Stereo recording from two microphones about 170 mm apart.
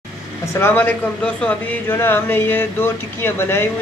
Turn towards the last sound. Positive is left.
turn(degrees=15)  # may be behind; listen again after turning